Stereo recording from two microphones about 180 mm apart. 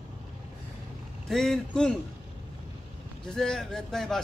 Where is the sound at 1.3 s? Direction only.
Centre (ahead or behind).